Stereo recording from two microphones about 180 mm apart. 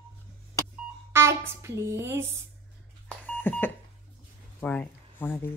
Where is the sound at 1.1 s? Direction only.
15° right (ahead or behind).